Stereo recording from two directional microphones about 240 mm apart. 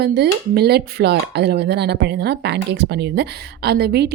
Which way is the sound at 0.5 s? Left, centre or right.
Right.